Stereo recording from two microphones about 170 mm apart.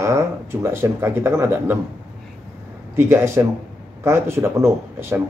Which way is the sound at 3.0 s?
15° right (ahead or behind).